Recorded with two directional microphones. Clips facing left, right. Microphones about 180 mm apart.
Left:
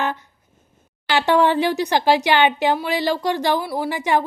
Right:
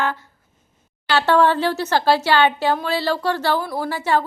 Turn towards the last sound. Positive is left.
turn(degrees=15)  # may be behind; listen again after turning